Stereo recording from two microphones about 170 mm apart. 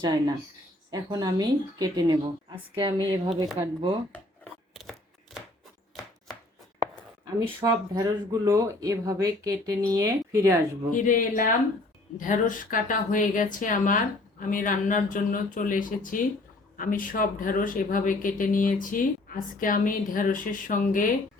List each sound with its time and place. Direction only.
0.0 s speech: 25° right (ahead or behind)
4.1 s shuffling cards: 5° left (ahead or behind)
7.3 s speech: 20° right (ahead or behind)
10.9 s speech: 50° left (ahead or behind)